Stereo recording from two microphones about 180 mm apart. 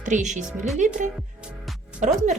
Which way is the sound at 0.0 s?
45° right (ahead or behind).